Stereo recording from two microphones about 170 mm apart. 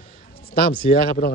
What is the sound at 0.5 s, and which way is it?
Speech, 60° left (ahead or behind).